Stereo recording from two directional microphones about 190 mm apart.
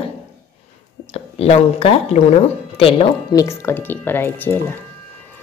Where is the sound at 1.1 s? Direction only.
30° left (ahead or behind).